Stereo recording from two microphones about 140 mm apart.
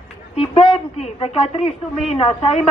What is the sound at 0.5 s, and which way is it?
A woman's voice, 45° left (ahead or behind).